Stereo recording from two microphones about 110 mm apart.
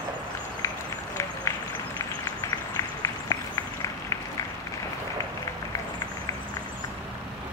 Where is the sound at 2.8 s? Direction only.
35° left (ahead or behind).